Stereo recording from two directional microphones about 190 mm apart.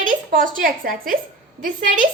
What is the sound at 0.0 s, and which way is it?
A woman's voice, 45° right (ahead or behind).